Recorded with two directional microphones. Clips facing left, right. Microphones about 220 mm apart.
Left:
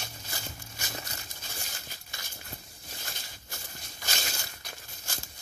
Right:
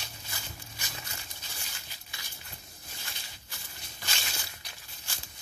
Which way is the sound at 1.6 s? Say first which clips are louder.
Left 4 dB; 45° left (ahead or behind).